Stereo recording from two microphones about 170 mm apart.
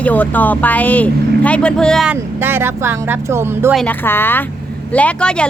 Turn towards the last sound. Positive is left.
turn(degrees=5)  # may be behind; listen again after turning